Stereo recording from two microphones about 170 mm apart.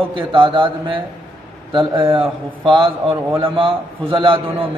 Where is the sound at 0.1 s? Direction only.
30° right (ahead or behind).